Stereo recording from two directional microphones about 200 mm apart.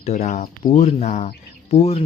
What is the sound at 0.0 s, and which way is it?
Speech, 35° left (ahead or behind).